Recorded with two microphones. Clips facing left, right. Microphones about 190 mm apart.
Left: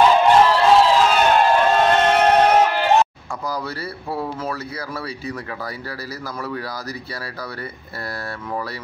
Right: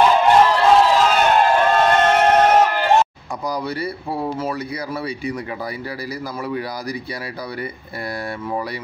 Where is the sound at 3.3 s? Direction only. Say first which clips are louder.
Right 2 dB; 15° right (ahead or behind).